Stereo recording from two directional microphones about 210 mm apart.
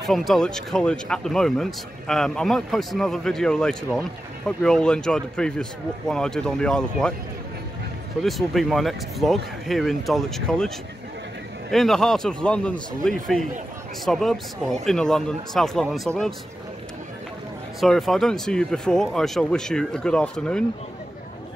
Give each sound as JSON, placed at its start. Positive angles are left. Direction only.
{"t": 0.0, "sound": "speech", "side_deg": 0}
{"t": 8.2, "sound": "speech", "side_deg": 0}
{"t": 11.7, "sound": "speech", "side_deg": 0}
{"t": 17.7, "sound": "speech", "side_deg": 0}